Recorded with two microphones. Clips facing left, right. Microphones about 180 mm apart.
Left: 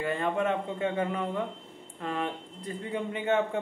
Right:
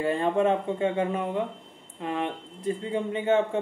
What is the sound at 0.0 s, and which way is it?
Speech, 30° right (ahead or behind).